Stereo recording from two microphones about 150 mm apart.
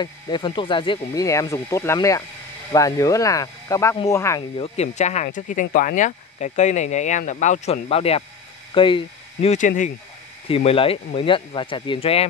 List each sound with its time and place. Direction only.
0.0 s speech: 30° left (ahead or behind)
1.2 s speech: 20° left (ahead or behind)
4.4 s speech: 35° left (ahead or behind)
4.9 s speech: 50° left (ahead or behind)
9.5 s speech: 60° left (ahead or behind)
10.5 s speech: 40° left (ahead or behind)